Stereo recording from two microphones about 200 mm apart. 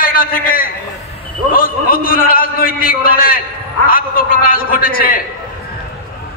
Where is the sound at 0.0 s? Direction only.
45° left (ahead or behind).